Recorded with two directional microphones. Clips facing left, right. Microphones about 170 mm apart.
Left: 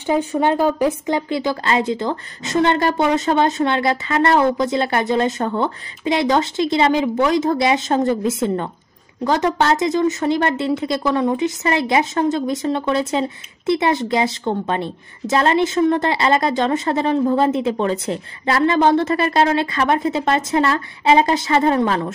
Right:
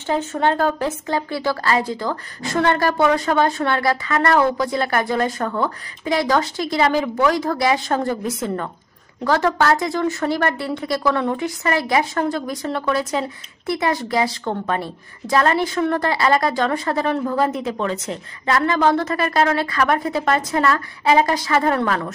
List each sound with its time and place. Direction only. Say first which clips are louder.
0.0 s a woman's voice: left 2 dB; 15° left (ahead or behind)